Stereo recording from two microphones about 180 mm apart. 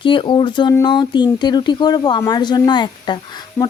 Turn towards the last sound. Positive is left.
turn(degrees=25)  # may be behind; listen again after turning